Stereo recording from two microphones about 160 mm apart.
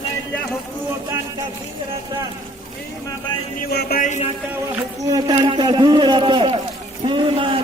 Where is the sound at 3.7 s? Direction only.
80° left.